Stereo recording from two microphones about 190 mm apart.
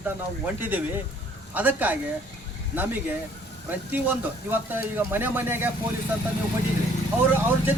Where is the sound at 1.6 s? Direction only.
10° right (ahead or behind).